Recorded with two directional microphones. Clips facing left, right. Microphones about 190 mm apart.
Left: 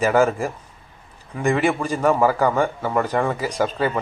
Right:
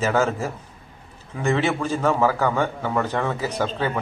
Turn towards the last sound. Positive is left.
turn(degrees=10)  # may be behind; listen again after turning